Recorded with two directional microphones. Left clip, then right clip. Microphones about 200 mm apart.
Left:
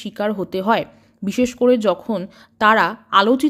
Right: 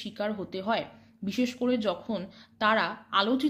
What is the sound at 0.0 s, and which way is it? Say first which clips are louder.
Speech: left 10 dB; 45° left (ahead or behind).